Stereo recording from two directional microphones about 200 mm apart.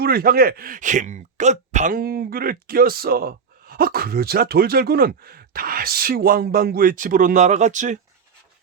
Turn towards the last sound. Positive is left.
turn(degrees=-40)  # may be behind; listen again after turning